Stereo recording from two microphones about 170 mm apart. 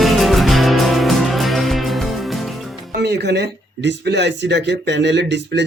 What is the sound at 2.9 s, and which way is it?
Speech, 75° right (ahead or behind).